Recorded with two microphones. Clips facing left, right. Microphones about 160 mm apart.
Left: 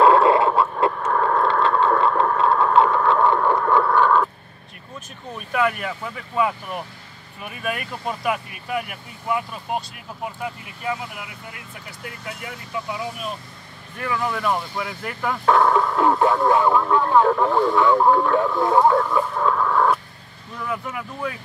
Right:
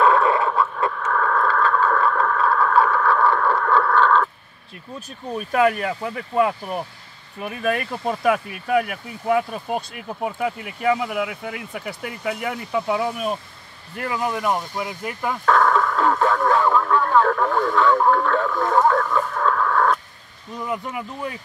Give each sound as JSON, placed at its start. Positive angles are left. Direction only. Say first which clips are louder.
{"t": 0.0, "sound": "a sound", "louder": "left 3 dB", "side_deg": 30}
{"t": 5.5, "sound": "speech", "louder": "right 3 dB", "side_deg": -40}
{"t": 10.4, "sound": "speech", "louder": "right 9 dB", "side_deg": -75}
{"t": 14.1, "sound": "speech", "louder": "even", "side_deg": -20}
{"t": 15.4, "sound": "speech", "louder": "left 1 dB", "side_deg": 20}